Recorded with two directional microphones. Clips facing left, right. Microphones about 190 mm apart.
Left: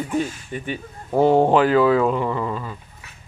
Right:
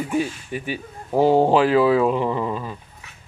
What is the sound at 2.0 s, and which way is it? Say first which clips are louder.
Speech: right 1 dB; 20° right (ahead or behind).